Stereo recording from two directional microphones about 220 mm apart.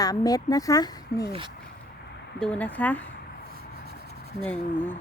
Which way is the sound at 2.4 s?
5° left (ahead or behind).